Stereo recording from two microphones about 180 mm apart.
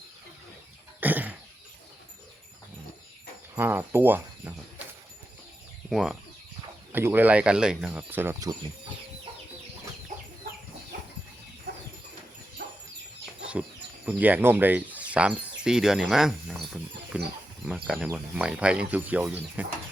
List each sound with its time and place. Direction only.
1.0 s cough: 10° right (ahead or behind)
3.5 s speech: 10° right (ahead or behind)
5.9 s speech: 5° right (ahead or behind)
12.6 s dog: 70° right (ahead or behind)
14.0 s speech: 10° right (ahead or behind)